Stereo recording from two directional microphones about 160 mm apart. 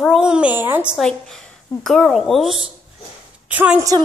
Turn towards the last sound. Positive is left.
turn(degrees=-10)  # may be behind; listen again after turning